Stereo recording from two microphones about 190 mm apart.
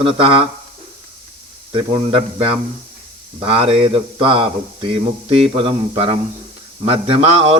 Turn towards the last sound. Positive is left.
turn(degrees=-30)  # may be behind; listen again after turning